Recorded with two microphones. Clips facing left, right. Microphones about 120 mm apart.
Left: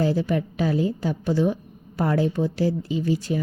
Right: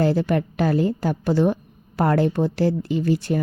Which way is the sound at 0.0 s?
65° right (ahead or behind).